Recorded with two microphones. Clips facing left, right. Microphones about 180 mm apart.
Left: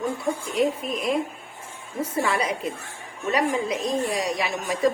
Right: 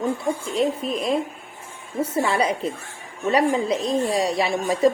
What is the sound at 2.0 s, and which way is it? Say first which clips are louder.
A woman's voice: right 3 dB; 30° right (ahead or behind).